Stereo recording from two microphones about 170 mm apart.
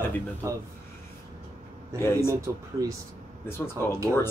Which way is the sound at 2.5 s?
15° right (ahead or behind).